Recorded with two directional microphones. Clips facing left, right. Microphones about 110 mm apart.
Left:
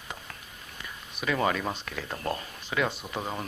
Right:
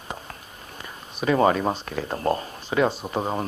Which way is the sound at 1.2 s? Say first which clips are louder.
Right 8 dB; 35° right (ahead or behind).